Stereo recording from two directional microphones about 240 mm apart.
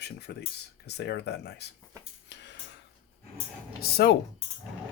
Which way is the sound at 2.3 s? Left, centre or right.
Left.